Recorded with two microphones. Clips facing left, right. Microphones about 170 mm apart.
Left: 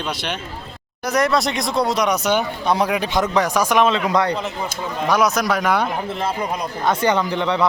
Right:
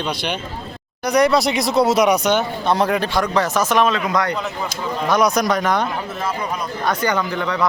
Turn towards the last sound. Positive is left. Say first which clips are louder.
# left 2 dB
turn(degrees=25)  # may be behind; listen again after turning